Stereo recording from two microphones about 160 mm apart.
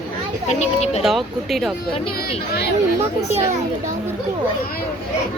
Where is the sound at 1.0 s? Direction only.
Centre (ahead or behind).